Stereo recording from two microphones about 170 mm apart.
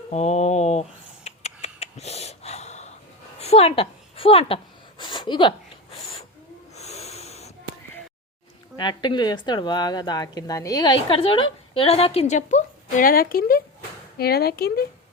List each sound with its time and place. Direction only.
0.1 s a sound: 40° left (ahead or behind)
6.7 s snort: 40° left (ahead or behind)
8.7 s speech: 25° left (ahead or behind); by 14.8 s 65° left (ahead or behind)